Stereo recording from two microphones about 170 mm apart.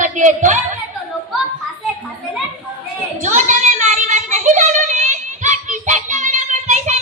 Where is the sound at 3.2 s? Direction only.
45° right (ahead or behind).